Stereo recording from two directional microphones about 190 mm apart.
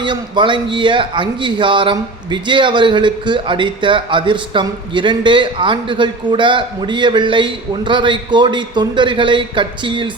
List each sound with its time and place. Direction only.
0.0 s a man's voice: 25° right (ahead or behind)